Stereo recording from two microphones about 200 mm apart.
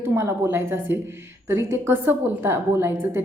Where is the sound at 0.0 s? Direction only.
15° right (ahead or behind).